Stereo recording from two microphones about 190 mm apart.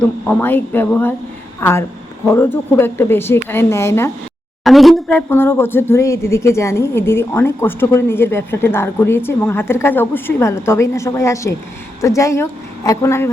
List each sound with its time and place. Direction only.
0.0 s speech: 5° left (ahead or behind)
4.6 s speech: centre (ahead or behind)